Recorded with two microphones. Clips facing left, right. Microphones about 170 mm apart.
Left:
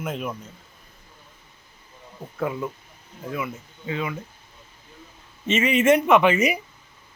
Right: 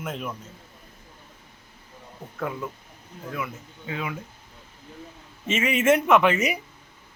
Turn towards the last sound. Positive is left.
turn(degrees=0)  # may be behind; listen again after turning